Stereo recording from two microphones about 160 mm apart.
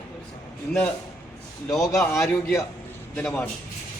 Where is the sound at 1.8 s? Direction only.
20° left (ahead or behind).